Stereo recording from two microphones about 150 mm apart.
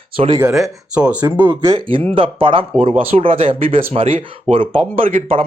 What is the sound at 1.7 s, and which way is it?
Speech, 35° right (ahead or behind).